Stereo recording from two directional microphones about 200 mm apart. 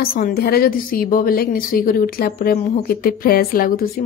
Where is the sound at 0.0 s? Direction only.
45° left (ahead or behind).